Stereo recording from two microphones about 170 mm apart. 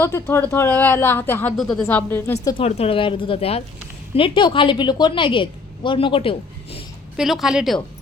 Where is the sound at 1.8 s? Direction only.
15° left (ahead or behind).